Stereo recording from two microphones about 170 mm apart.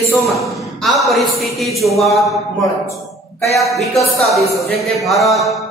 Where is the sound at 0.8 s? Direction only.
Centre (ahead or behind).